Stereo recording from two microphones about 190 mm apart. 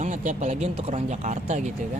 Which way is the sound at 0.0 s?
40° right (ahead or behind).